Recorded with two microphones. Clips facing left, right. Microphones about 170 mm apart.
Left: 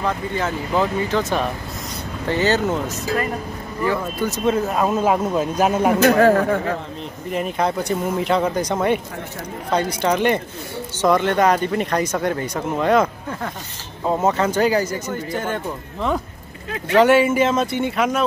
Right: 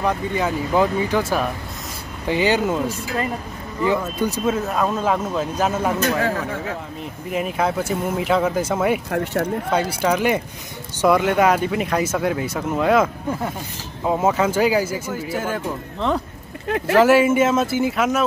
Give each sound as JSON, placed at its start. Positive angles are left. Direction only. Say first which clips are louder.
{"t": 0.0, "sound": "speech", "louder": "right 1 dB", "side_deg": -15}
{"t": 4.5, "sound": "speech", "louder": "left 4 dB", "side_deg": 5}
{"t": 5.9, "sound": "speech", "louder": "left 7 dB", "side_deg": 60}
{"t": 7.2, "sound": "speech", "louder": "even", "side_deg": -5}
{"t": 9.1, "sound": "speech", "louder": "right 10 dB", "side_deg": -70}
{"t": 9.7, "sound": "speech", "louder": "left 5 dB", "side_deg": -5}